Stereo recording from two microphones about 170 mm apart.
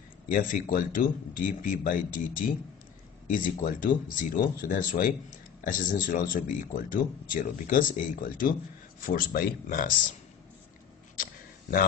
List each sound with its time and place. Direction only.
0.3 s speech: 55° left (ahead or behind)